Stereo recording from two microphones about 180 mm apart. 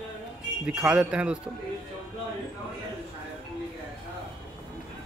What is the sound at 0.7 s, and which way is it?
Speech, 5° right (ahead or behind).